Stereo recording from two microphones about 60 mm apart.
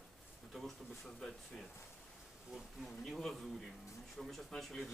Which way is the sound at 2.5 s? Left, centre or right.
Centre.